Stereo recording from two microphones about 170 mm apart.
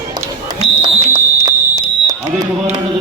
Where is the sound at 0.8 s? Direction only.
25° right (ahead or behind).